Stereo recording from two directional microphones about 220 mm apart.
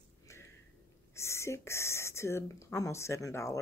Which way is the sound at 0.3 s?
15° left (ahead or behind).